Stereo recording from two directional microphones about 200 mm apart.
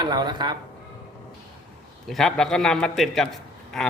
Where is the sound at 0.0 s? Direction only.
20° right (ahead or behind).